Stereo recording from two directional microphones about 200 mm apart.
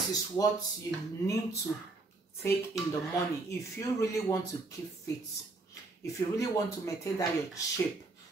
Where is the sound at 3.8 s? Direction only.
15° left (ahead or behind).